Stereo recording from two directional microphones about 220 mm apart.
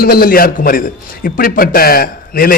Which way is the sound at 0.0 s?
40° left (ahead or behind).